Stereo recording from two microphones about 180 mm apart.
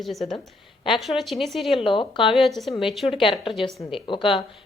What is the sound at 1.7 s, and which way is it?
Speech, 30° left (ahead or behind).